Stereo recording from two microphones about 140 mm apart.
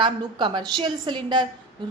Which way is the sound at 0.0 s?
35° right (ahead or behind).